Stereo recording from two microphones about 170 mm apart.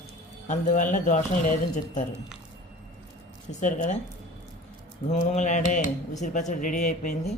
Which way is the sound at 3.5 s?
45° left (ahead or behind).